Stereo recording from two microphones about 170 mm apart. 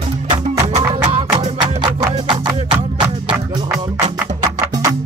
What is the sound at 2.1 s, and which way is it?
Music, 25° right (ahead or behind).